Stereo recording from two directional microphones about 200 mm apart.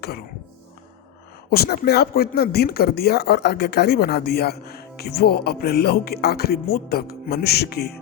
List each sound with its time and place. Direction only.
1.5 s speech: 50° left (ahead or behind)